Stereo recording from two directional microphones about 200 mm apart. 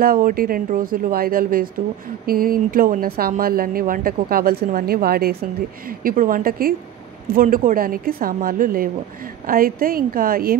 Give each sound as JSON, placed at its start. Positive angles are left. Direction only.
{"t": 0.0, "sound": "speech", "side_deg": -45}